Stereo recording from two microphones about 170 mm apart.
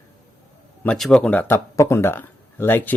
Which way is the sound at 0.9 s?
Centre (ahead or behind).